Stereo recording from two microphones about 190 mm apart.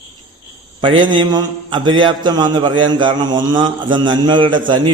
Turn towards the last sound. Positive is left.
turn(degrees=-25)  # may be behind; listen again after turning